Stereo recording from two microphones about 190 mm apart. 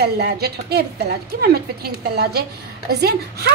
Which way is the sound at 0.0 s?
60° right (ahead or behind).